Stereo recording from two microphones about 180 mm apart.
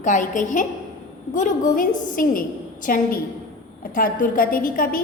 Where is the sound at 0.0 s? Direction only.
45° left (ahead or behind).